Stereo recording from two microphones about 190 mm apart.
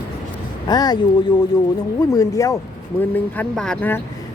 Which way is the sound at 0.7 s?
20° left (ahead or behind).